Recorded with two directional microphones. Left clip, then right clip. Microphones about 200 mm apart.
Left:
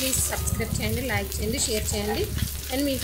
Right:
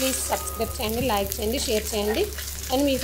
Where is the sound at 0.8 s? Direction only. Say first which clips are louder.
Right 5 dB; 10° right (ahead or behind).